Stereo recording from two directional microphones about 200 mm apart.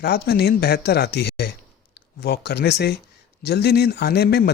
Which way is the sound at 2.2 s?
55° left (ahead or behind).